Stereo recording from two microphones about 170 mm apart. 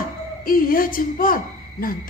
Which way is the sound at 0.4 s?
55° left (ahead or behind).